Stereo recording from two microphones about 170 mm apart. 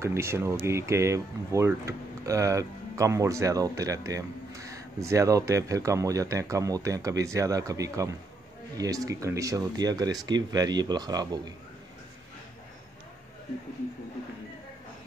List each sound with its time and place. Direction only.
0.0 s speech: 15° right (ahead or behind)